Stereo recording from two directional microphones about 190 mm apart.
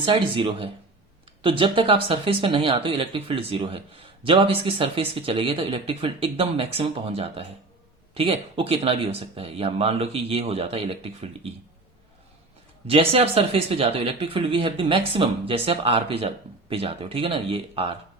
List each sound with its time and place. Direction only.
0.0 s speech: 25° right (ahead or behind)
12.9 s speech: 30° right (ahead or behind)